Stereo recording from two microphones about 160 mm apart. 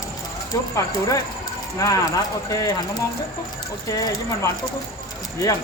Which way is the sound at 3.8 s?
20° left (ahead or behind).